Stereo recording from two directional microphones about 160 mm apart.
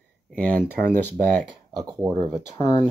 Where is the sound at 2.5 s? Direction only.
20° left (ahead or behind).